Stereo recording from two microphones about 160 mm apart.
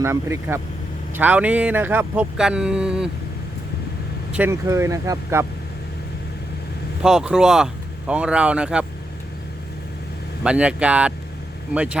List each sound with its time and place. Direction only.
0.0 s speech: 15° right (ahead or behind)
4.3 s speech: 10° right (ahead or behind)
7.0 s speech: 5° right (ahead or behind)
10.4 s speech: 5° right (ahead or behind)